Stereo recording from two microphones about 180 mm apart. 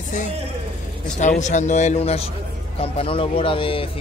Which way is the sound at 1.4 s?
40° left (ahead or behind).